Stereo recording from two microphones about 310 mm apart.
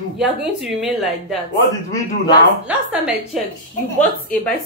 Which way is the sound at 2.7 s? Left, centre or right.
Centre.